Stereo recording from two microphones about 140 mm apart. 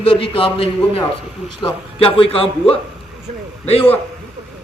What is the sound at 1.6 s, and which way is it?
Speech, 40° left (ahead or behind).